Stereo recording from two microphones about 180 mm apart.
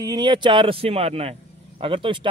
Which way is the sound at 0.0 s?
25° right (ahead or behind).